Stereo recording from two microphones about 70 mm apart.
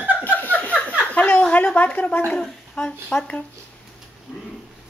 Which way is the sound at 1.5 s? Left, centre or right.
Left.